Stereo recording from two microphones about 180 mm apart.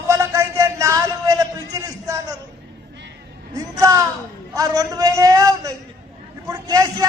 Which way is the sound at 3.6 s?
20° right (ahead or behind).